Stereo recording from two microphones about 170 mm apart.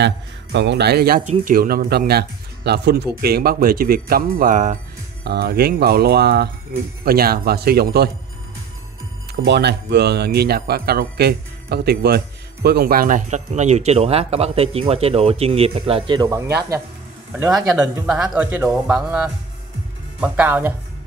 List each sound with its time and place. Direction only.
0.0 s speech: 90° right; by 1.2 s 65° right (ahead or behind)
1.2 s speech: 50° right (ahead or behind)
5.2 s speech: 70° right (ahead or behind)
9.3 s a man's voice: 80° right; by 16.4 s 20° right (ahead or behind)
18.0 s speech: 5° right (ahead or behind)